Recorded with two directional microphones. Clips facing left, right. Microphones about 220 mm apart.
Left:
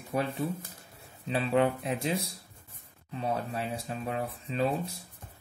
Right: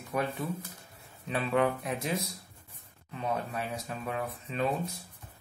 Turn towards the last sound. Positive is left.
turn(degrees=30)  # may be behind; listen again after turning